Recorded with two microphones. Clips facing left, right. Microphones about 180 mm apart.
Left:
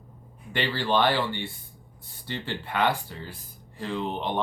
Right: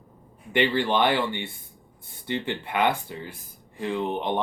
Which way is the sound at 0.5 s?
20° right (ahead or behind).